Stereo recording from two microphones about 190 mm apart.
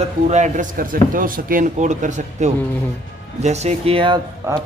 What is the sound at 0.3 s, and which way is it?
A man's voice, 40° right (ahead or behind).